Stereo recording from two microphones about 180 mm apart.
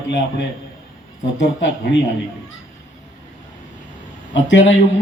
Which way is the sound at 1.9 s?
75° left (ahead or behind).